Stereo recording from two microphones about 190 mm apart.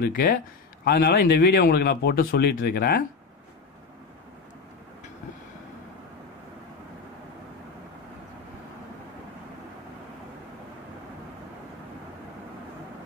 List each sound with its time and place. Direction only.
0.0 s speech: 55° left (ahead or behind)